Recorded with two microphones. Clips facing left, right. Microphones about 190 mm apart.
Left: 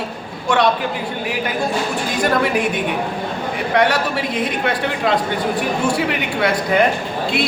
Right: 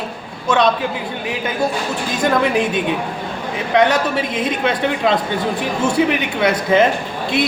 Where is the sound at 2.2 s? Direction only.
20° right (ahead or behind).